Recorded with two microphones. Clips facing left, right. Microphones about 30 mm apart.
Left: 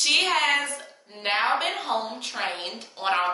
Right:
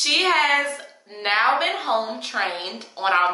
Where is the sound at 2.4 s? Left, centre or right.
Centre.